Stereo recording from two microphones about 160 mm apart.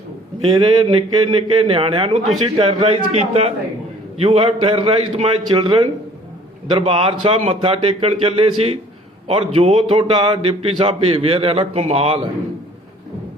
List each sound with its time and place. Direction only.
0.5 s a man's voice: 35° right (ahead or behind)